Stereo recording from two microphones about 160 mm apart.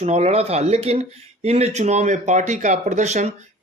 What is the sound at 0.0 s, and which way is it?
Speech, 45° right (ahead or behind).